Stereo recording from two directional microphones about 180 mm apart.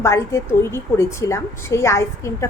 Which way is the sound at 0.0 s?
15° left (ahead or behind).